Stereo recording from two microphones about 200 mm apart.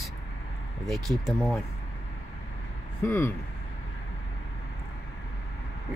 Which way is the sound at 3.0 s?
10° left (ahead or behind).